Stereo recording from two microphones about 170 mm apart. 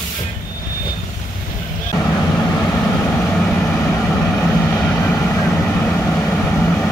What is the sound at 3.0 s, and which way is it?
Vehicle, 5° left (ahead or behind).